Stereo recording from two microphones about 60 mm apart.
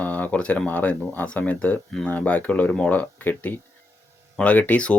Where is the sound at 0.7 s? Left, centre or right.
Left.